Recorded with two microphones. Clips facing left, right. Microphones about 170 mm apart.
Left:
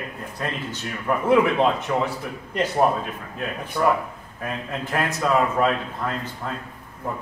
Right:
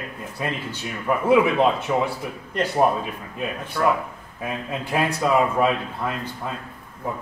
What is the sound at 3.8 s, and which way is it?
Speech, 15° left (ahead or behind).